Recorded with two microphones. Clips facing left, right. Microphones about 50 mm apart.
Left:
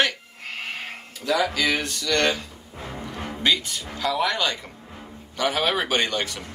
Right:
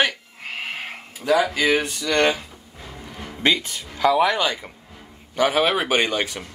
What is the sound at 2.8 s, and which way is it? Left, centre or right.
Music, left.